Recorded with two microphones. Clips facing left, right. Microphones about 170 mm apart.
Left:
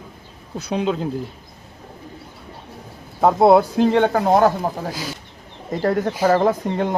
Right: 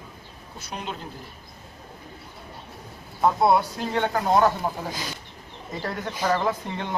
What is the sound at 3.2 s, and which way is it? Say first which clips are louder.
Speech: left 7 dB; 65° left (ahead or behind).